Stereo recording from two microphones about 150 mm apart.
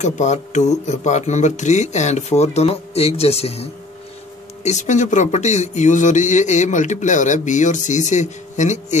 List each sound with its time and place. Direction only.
0.0 s speech: 50° left (ahead or behind)